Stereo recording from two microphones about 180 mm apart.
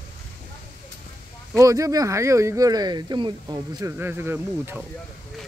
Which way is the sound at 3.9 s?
10° right (ahead or behind).